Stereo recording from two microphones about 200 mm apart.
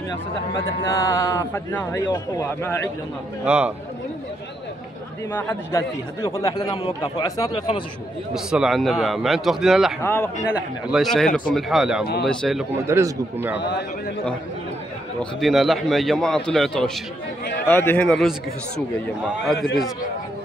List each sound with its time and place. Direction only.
0.9 s speech: 15° left (ahead or behind)
3.4 s a man's voice: 5° right (ahead or behind)
5.3 s speech: 10° left (ahead or behind)
8.3 s a man's voice: 5° right (ahead or behind)
10.0 s speech: 10° left (ahead or behind)
10.5 s a man's voice: centre (ahead or behind)
12.8 s a man's voice: 10° right (ahead or behind)
13.6 s a man's voice: 60° left (ahead or behind)
15.4 s a man's voice: centre (ahead or behind)
19.4 s a man's voice: centre (ahead or behind)